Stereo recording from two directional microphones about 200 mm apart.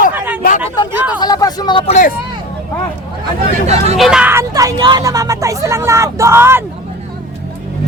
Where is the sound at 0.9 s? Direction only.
5° right (ahead or behind).